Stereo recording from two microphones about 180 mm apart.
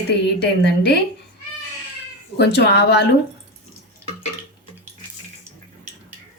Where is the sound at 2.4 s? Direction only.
70° left (ahead or behind).